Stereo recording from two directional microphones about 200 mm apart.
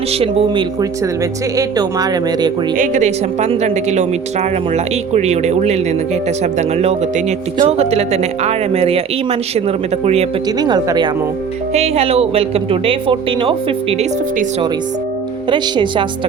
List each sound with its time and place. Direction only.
0.1 s speech: 30° right (ahead or behind)
0.8 s speech: 15° right (ahead or behind)
2.7 s speech: 40° right (ahead or behind)
10.6 s speech: 20° right (ahead or behind)
11.7 s speech: 30° right (ahead or behind)
15.4 s speech: 25° right (ahead or behind)